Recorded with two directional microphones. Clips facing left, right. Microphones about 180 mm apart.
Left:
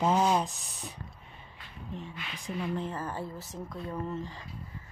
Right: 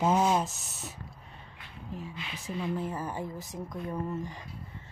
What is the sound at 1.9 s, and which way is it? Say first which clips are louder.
A woman's voice: right 1 dB; 5° right (ahead or behind).